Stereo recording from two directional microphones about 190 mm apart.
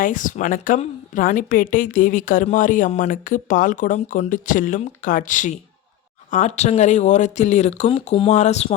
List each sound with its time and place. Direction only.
0.0 s a woman's voice: 45° left (ahead or behind)